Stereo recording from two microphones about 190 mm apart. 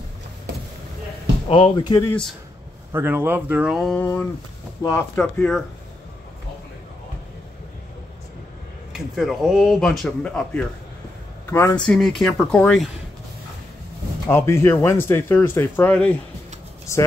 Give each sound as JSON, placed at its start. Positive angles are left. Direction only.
{"t": 1.5, "sound": "speech", "side_deg": 25}
{"t": 2.0, "sound": "speech", "side_deg": 5}
{"t": 2.9, "sound": "speech", "side_deg": -10}
{"t": 5.1, "sound": "speech", "side_deg": 5}
{"t": 8.9, "sound": "speech", "side_deg": 0}
{"t": 14.2, "sound": "speech", "side_deg": 15}